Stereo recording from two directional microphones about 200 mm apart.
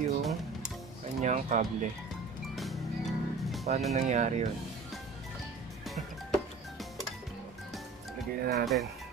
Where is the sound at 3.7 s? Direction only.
35° right (ahead or behind).